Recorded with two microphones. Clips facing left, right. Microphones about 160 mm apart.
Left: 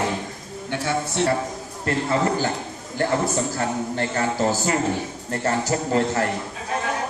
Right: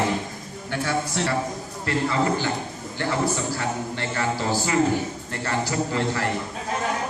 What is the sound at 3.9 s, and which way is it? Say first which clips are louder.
A man's voice: left 3 dB; 45° left (ahead or behind).